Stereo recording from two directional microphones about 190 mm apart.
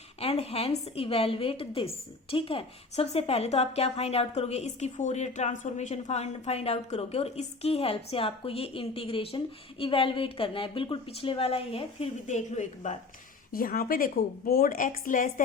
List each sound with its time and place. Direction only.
0.2 s a woman's voice: 30° left (ahead or behind)
13.5 s a woman's voice: 50° left (ahead or behind)